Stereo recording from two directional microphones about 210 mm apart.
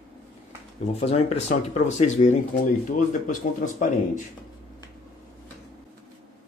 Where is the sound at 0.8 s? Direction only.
30° left (ahead or behind).